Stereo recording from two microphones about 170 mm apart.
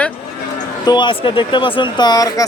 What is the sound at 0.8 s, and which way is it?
Speech, 25° left (ahead or behind).